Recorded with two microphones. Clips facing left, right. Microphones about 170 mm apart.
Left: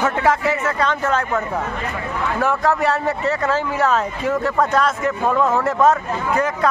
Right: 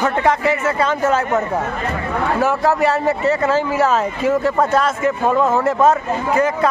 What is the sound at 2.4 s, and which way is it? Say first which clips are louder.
Speech: right 1 dB; 5° right (ahead or behind).